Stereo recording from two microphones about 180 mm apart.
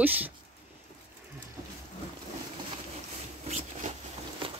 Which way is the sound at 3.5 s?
35° right (ahead or behind).